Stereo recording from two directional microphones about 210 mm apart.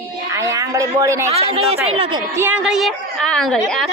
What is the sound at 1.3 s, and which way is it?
A woman's voice, 30° right (ahead or behind).